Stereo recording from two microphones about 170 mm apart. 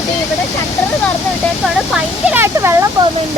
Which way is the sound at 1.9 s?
10° right (ahead or behind).